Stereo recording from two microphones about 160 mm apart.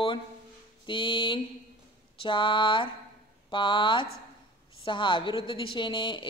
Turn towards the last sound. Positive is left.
turn(degrees=30)  # may be behind; listen again after turning